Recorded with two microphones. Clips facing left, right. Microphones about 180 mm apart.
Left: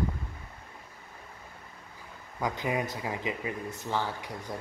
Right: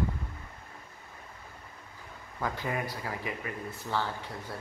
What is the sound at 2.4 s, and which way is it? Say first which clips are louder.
Speech: left 3 dB; 15° left (ahead or behind).